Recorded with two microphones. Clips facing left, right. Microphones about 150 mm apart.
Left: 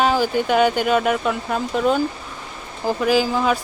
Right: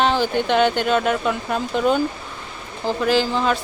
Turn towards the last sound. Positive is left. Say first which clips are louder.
# left 1 dB
turn(degrees=5)  # may be behind; listen again after turning